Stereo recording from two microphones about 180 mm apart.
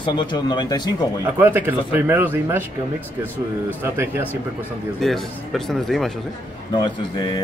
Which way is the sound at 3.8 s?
15° right (ahead or behind).